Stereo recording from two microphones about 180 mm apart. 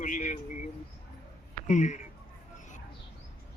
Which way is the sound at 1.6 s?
40° left (ahead or behind).